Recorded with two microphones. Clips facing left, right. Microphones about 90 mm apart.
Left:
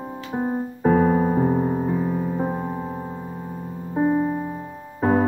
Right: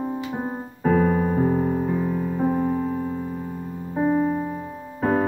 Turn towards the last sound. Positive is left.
turn(degrees=15)  # may be behind; listen again after turning